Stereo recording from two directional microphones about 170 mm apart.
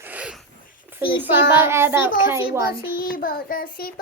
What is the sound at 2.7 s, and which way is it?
Child singing, 65° left (ahead or behind).